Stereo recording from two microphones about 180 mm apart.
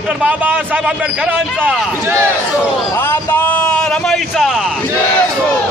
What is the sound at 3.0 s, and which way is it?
A man's voice, 10° left (ahead or behind).